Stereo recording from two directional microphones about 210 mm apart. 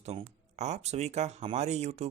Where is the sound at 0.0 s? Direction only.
30° right (ahead or behind).